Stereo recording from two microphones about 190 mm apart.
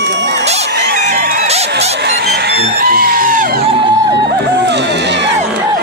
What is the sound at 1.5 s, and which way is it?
Music, 35° right (ahead or behind).